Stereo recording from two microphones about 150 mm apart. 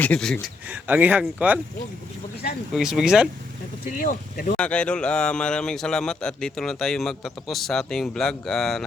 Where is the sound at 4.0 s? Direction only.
65° left (ahead or behind).